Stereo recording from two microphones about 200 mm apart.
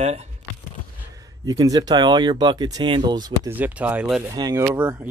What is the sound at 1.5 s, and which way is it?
Speech, 20° right (ahead or behind).